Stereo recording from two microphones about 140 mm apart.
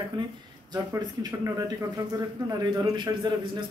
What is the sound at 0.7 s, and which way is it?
A man's voice, 25° right (ahead or behind).